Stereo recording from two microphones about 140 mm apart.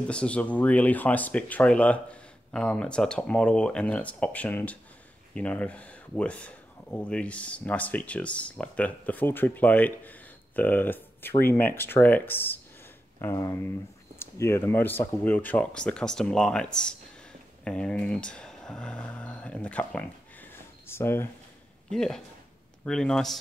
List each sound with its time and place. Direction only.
0.1 s speech: 10° left (ahead or behind)
21.8 s speech: 5° left (ahead or behind)